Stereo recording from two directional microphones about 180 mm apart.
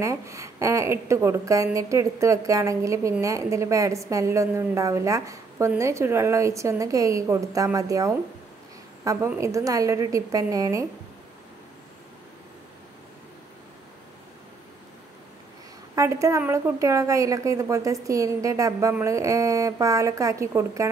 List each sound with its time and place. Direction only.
0.0 s a woman's voice: 15° right (ahead or behind)
15.9 s a woman's voice: 15° right (ahead or behind)